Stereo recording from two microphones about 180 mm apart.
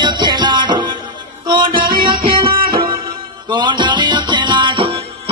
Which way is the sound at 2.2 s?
50° right (ahead or behind).